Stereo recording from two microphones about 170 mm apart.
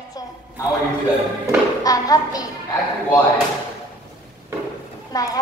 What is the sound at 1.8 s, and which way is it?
Music, 20° left (ahead or behind).